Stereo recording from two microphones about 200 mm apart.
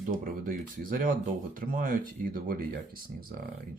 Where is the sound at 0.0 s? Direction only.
45° right (ahead or behind).